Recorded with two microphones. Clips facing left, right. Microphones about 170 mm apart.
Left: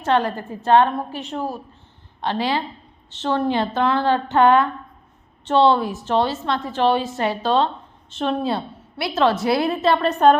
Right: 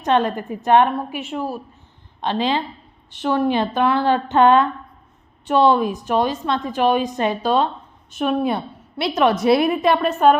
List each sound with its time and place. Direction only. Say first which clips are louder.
0.0 s a woman's voice: right 1 dB; 20° right (ahead or behind)
2.2 s a woman's voice: right 2 dB; 20° right (ahead or behind)